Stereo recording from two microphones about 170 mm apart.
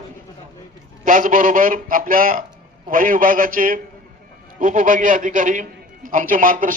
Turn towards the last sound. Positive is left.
turn(degrees=-55)  # may be behind; listen again after turning